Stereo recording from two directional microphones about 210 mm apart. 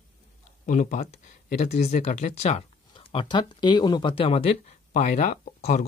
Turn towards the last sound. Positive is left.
turn(degrees=35)  # may be behind; listen again after turning